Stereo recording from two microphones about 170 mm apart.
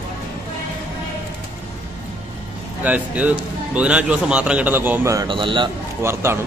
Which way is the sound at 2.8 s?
10° right (ahead or behind).